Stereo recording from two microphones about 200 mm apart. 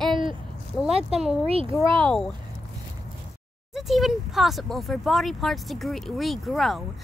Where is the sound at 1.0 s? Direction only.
Centre (ahead or behind).